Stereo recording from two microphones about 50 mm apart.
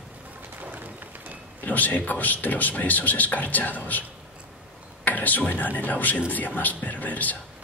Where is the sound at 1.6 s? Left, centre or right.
Left.